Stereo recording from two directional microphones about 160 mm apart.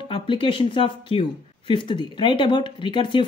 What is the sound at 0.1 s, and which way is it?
Speech, 35° left (ahead or behind).